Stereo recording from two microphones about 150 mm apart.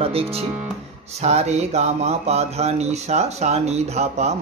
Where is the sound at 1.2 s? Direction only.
50° right (ahead or behind).